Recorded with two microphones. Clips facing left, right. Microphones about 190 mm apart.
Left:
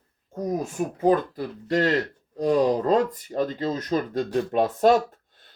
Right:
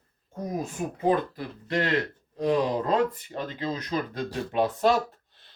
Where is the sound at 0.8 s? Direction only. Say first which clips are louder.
Left 3 dB; 50° left (ahead or behind).